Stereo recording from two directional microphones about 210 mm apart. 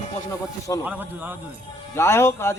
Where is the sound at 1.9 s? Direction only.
10° left (ahead or behind).